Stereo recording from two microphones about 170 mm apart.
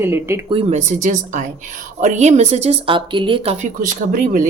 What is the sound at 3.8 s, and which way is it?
Speech, 55° right (ahead or behind).